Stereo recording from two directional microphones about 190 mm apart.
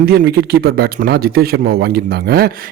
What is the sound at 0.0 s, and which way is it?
Speech, 55° right (ahead or behind).